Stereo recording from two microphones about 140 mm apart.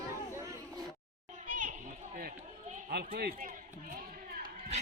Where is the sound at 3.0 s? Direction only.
90° right.